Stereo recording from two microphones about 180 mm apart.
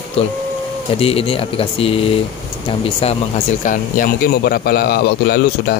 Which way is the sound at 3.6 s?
50° left (ahead or behind).